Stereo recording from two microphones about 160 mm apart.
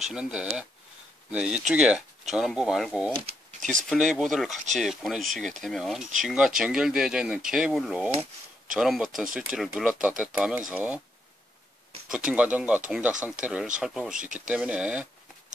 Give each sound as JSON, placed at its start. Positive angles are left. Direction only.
{"t": 0.1, "sound": "speech", "side_deg": -5}
{"t": 12.1, "sound": "speech", "side_deg": -5}